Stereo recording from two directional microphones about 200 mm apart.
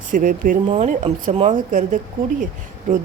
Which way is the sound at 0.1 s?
40° right (ahead or behind).